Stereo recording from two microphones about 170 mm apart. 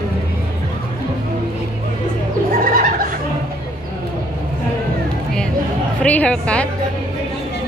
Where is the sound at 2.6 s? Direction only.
55° right (ahead or behind).